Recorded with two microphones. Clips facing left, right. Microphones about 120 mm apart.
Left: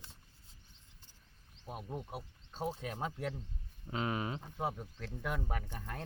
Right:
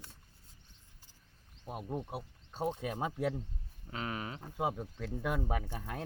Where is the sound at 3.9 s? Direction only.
20° left (ahead or behind).